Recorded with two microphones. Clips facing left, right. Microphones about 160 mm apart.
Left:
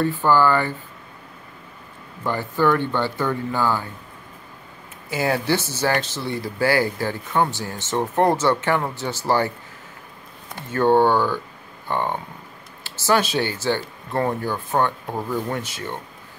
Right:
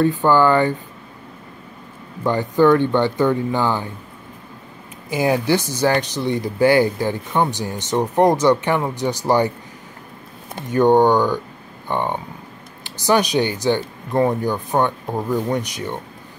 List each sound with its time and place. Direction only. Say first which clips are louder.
0.0 s speech: right 3 dB; 15° right (ahead or behind)
2.2 s speech: right 6 dB; 15° right (ahead or behind)
5.1 s speech: right 4 dB; 15° right (ahead or behind)
10.5 s speech: right 3 dB; 15° right (ahead or behind)